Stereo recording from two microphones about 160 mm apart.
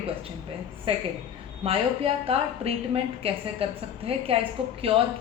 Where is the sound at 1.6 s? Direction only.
35° right (ahead or behind).